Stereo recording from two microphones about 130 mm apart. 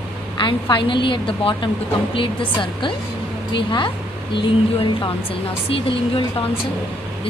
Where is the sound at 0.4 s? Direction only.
40° left (ahead or behind).